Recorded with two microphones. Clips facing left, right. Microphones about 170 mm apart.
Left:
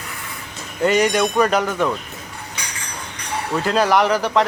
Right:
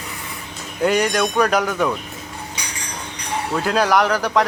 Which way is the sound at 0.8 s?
Centre (ahead or behind).